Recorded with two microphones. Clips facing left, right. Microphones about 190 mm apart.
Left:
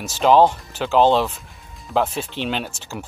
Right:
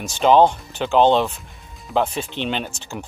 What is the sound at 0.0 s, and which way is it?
Speech, centre (ahead or behind).